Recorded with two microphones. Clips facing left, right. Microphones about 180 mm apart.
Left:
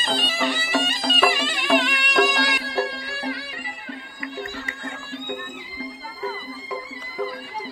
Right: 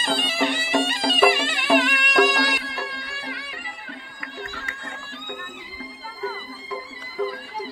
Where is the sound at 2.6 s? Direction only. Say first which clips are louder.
Left 7 dB; 30° left (ahead or behind).